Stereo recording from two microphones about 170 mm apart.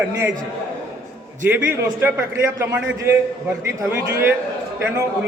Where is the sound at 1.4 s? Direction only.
10° right (ahead or behind).